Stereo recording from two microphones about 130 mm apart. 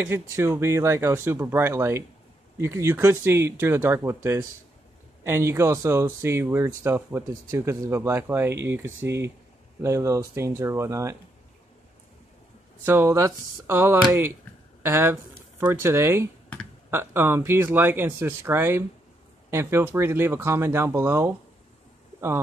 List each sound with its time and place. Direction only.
0.1 s speech: 20° right (ahead or behind)
12.8 s speech: 20° right (ahead or behind)